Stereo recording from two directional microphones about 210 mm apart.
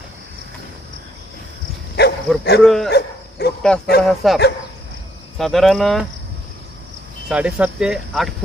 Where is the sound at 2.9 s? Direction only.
50° left (ahead or behind).